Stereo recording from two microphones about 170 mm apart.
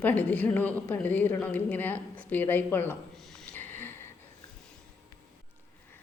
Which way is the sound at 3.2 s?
Centre (ahead or behind).